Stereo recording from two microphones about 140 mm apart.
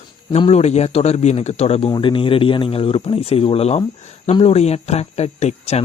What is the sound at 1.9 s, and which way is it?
Speech, 35° left (ahead or behind).